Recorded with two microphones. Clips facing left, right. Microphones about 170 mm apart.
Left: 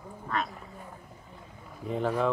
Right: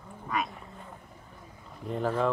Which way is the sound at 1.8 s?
Centre (ahead or behind).